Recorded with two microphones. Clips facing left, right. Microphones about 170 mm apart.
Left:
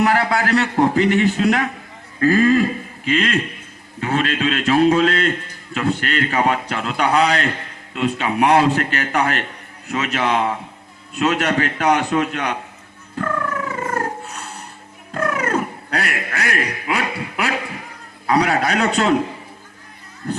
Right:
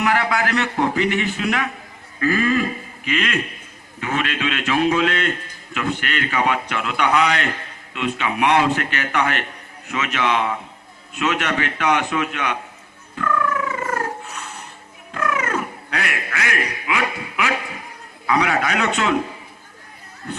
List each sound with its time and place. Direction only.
0.0 s a man's voice: 35° left (ahead or behind)
13.1 s music: 35° left (ahead or behind)
15.1 s a man's voice: 35° left (ahead or behind)